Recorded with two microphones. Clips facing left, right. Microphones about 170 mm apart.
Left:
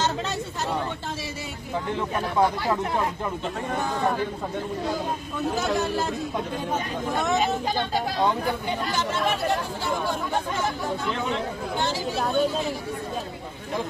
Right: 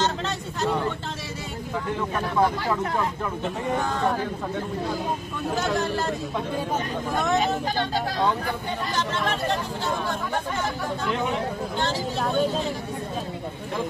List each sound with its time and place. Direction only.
5.6 s speech: 5° left (ahead or behind)
7.7 s speech: 15° left (ahead or behind)
11.8 s speech: 10° left (ahead or behind)